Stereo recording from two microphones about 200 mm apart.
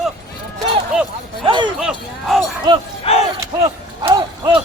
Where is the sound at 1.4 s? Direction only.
25° right (ahead or behind).